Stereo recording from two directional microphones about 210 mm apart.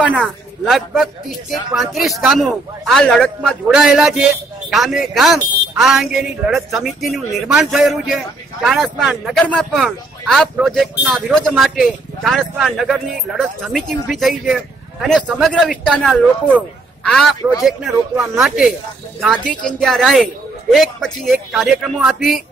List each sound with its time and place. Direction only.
0.2 s speech: centre (ahead or behind)